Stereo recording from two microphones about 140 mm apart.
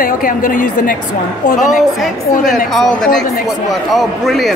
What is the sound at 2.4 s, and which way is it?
A man's voice, centre (ahead or behind).